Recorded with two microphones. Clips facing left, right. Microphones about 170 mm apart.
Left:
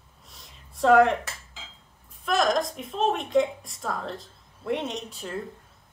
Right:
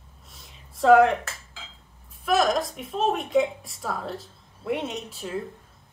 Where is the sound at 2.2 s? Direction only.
5° right (ahead or behind).